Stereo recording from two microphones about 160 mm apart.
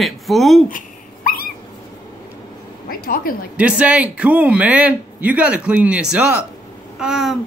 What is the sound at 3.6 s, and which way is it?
A man's voice, 10° right (ahead or behind).